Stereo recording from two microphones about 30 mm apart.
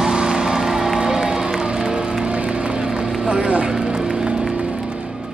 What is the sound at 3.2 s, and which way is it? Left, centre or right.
Vehicle, right.